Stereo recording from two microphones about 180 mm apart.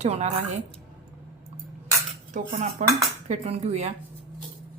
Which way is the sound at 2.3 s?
45° right (ahead or behind).